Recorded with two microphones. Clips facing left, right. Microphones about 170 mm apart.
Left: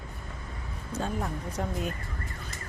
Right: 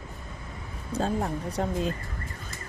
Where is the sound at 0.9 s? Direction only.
35° right (ahead or behind).